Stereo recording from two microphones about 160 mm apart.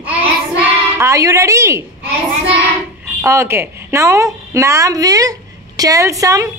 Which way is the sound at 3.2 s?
15° right (ahead or behind).